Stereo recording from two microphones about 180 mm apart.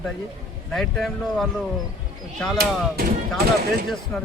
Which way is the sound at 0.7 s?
Centre (ahead or behind).